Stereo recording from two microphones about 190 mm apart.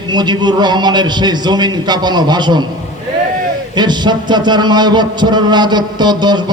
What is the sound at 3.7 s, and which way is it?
A man's voice, 25° right (ahead or behind).